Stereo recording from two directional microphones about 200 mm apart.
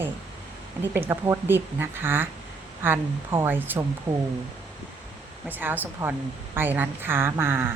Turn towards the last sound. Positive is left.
turn(degrees=-10)  # may be behind; listen again after turning